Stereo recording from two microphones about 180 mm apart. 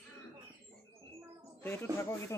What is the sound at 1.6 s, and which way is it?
Speech, 15° left (ahead or behind).